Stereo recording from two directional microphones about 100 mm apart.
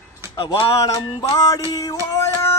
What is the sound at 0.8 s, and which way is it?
Music, 40° left (ahead or behind).